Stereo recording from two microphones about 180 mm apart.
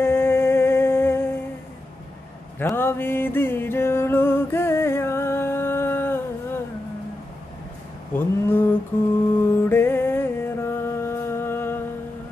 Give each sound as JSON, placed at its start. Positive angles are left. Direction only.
{"t": 0.0, "sound": "music", "side_deg": 15}
{"t": 2.7, "sound": "music", "side_deg": 10}
{"t": 8.1, "sound": "a sound", "side_deg": 10}
{"t": 9.4, "sound": "music", "side_deg": 10}